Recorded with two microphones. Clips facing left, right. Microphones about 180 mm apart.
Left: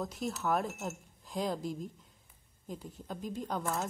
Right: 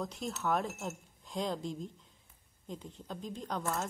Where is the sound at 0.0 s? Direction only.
Centre (ahead or behind).